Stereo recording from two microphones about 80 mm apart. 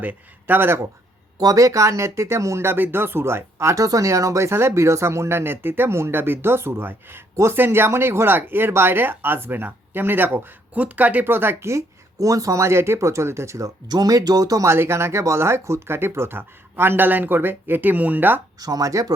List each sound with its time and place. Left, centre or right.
0.0 s speech: right
1.4 s speech: right
12.2 s speech: right
14.7 s speech: right
18.6 s speech: right